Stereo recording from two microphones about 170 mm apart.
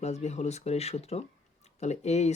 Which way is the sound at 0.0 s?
40° left (ahead or behind).